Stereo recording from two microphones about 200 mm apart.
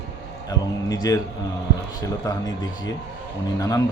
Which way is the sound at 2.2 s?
20° left (ahead or behind).